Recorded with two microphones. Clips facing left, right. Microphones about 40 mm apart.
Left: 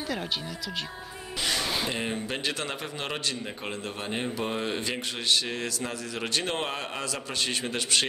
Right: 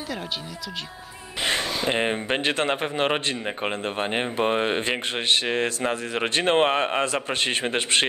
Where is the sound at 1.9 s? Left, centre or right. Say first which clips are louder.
Right 7 dB; right.